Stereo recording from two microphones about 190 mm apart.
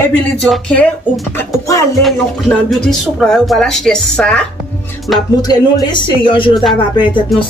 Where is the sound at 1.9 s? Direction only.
Centre (ahead or behind).